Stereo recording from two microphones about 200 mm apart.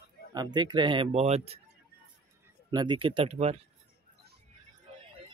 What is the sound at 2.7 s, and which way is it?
Speech, 25° right (ahead or behind).